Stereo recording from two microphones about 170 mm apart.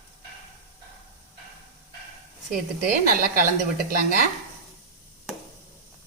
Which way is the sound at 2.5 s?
55° right (ahead or behind).